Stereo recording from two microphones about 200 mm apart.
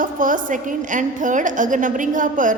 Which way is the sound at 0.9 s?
40° right (ahead or behind).